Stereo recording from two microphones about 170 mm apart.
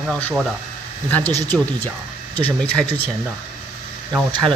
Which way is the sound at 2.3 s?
10° left (ahead or behind).